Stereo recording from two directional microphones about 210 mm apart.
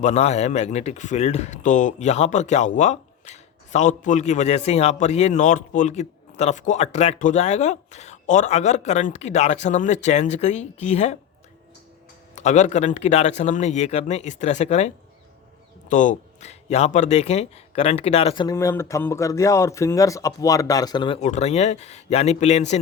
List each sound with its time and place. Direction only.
0.0 s speech: 30° left (ahead or behind)
12.3 s speech: 35° left (ahead or behind)
18.4 s speech: 15° left (ahead or behind)
21.2 s speech: 35° left (ahead or behind)